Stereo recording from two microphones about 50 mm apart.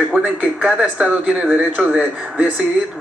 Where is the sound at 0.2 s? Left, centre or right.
Right.